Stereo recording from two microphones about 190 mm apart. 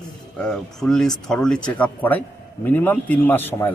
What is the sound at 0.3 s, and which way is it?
A man's voice, 5° left (ahead or behind).